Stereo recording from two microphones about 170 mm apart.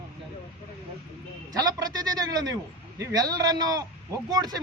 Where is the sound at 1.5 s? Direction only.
25° right (ahead or behind).